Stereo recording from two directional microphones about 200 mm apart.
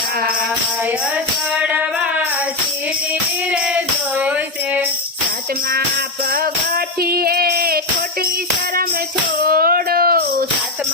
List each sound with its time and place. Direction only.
1.5 s music: 5° right (ahead or behind)
3.5 s music: 5° right (ahead or behind)
6.3 s music: 50° right (ahead or behind)
9.4 s a sound: 45° right (ahead or behind)